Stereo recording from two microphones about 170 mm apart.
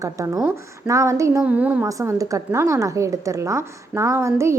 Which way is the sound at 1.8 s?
20° right (ahead or behind).